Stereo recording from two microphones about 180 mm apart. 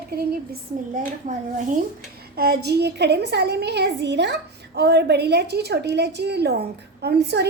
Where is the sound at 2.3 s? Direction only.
65° right (ahead or behind).